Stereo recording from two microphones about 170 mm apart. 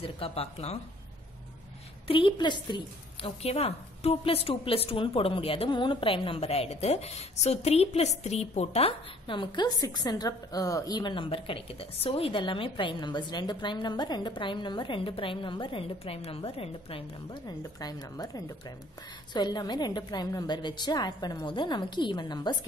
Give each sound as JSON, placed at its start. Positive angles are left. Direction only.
{"t": 0.0, "sound": "a woman's voice", "side_deg": 35}
{"t": 2.0, "sound": "a woman's voice", "side_deg": 30}